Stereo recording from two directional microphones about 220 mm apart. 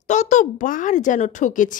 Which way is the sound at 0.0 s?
35° left (ahead or behind).